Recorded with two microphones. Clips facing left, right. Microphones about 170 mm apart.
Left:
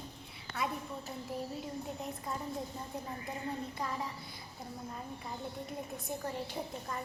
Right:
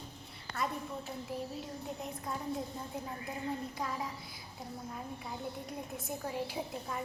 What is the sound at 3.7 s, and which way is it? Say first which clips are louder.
A woman's voice: even; centre (ahead or behind).